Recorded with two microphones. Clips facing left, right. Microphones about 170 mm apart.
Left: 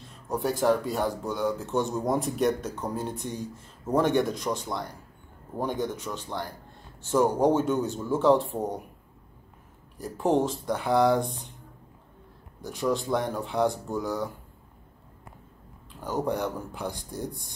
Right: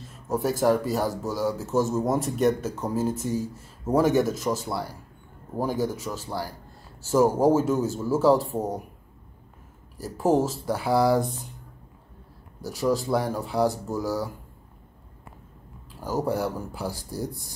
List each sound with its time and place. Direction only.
0.3 s speech: 5° right (ahead or behind)
9.9 s speech: 5° right (ahead or behind)
12.6 s speech: 5° right (ahead or behind)
16.0 s speech: 5° right (ahead or behind)